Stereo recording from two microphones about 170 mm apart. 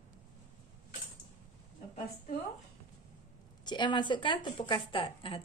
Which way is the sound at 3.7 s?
25° left (ahead or behind).